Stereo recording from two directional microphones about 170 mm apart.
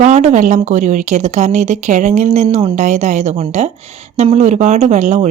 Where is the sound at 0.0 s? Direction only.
40° right (ahead or behind).